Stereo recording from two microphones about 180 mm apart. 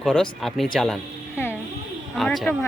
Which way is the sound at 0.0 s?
Centre (ahead or behind).